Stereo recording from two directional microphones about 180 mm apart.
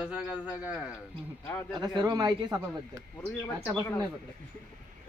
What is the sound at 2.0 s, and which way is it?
Speech, 20° right (ahead or behind).